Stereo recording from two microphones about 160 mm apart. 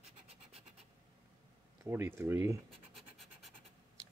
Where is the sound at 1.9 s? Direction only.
15° right (ahead or behind).